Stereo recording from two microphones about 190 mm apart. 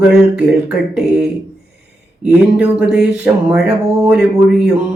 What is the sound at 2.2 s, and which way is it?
Mantra, 5° right (ahead or behind).